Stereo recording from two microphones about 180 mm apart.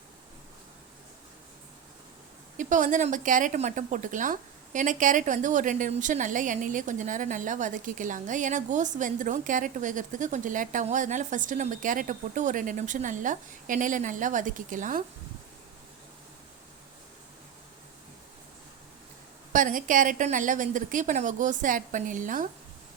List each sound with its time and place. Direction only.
2.6 s speech: 45° right (ahead or behind)
19.5 s speech: 50° right (ahead or behind)